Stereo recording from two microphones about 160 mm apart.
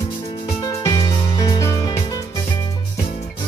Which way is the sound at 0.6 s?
25° left (ahead or behind).